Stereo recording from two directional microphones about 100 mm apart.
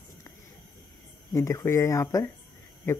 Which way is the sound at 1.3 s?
35° left (ahead or behind).